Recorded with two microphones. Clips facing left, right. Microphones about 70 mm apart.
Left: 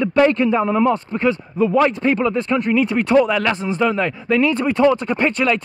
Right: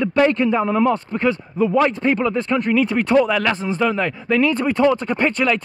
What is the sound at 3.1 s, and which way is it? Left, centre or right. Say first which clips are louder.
Speech: left 1 dB; left.